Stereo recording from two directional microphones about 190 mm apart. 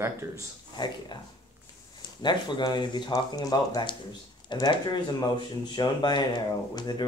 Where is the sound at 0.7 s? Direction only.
25° left (ahead or behind).